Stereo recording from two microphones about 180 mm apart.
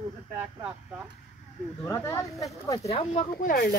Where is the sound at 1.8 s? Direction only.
15° left (ahead or behind).